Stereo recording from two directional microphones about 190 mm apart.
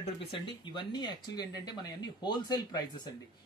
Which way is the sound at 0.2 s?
25° left (ahead or behind).